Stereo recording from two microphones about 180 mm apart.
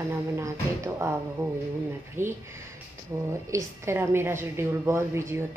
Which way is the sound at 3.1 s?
15° right (ahead or behind).